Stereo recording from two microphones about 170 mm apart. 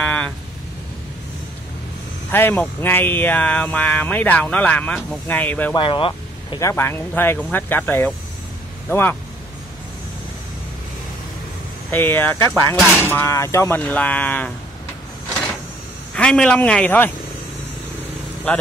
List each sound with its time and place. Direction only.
0.0 s a sound: 10° left (ahead or behind)
2.3 s speech: 10° left (ahead or behind)
5.8 s speech: 30° left (ahead or behind)
6.6 s speech: 15° left (ahead or behind)
11.9 s speech: 10° left (ahead or behind)
16.2 s speech: 5° left (ahead or behind)
18.5 s speech: 10° left (ahead or behind)